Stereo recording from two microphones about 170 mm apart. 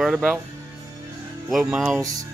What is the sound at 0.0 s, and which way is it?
Speech, centre (ahead or behind).